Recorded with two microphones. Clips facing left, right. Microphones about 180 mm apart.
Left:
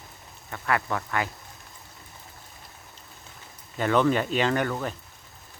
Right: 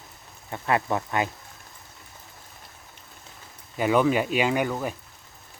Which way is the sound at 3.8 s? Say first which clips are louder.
Right 1 dB; 10° right (ahead or behind).